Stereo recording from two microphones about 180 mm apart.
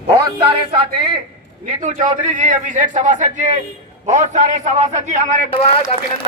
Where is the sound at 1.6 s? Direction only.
40° right (ahead or behind).